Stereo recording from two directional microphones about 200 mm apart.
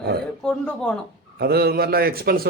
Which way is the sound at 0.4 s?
5° left (ahead or behind).